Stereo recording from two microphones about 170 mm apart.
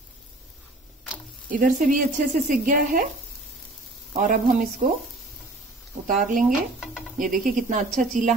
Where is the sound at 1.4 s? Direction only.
50° right (ahead or behind).